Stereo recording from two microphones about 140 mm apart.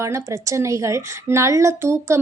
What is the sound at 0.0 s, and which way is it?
A woman's voice, 20° right (ahead or behind).